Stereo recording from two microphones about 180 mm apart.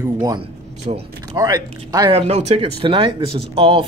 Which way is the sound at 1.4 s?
20° right (ahead or behind).